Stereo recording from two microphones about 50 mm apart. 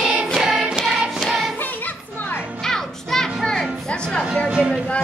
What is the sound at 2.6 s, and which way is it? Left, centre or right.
Music, centre.